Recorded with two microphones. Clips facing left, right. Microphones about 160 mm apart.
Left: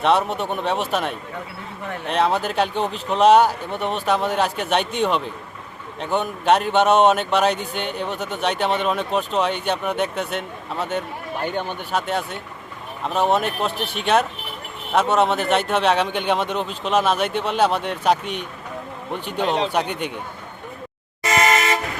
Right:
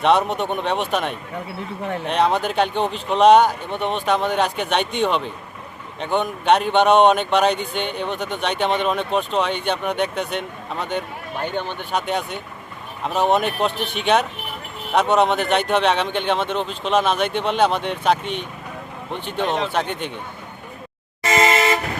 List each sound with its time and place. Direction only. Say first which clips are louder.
0.0 s a man's voice: right 1 dB; centre (ahead or behind)
21.2 s vehicle: right 1 dB; 25° right (ahead or behind)